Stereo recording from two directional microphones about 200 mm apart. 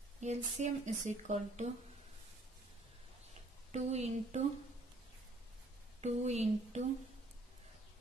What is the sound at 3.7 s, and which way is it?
Speech, 35° right (ahead or behind).